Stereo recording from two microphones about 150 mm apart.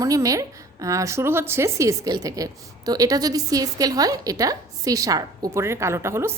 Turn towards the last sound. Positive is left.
turn(degrees=-15)  # may be behind; listen again after turning